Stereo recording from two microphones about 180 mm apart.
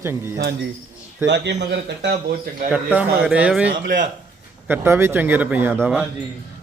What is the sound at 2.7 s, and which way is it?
Speech, 5° right (ahead or behind).